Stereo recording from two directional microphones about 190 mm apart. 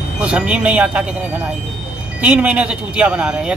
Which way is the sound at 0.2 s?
5° right (ahead or behind).